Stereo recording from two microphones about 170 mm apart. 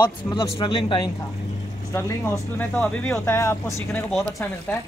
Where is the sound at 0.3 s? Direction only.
30° left (ahead or behind).